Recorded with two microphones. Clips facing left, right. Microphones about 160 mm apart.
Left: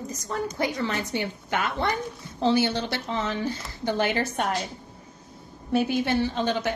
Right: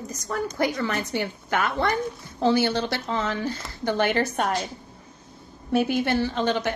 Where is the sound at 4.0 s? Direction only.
55° right (ahead or behind).